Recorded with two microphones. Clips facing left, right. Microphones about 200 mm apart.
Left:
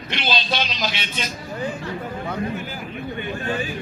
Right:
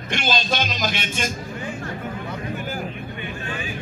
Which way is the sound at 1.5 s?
35° left (ahead or behind).